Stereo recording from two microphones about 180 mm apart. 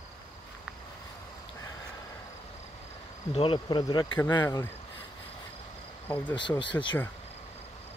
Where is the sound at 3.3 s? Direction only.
30° left (ahead or behind).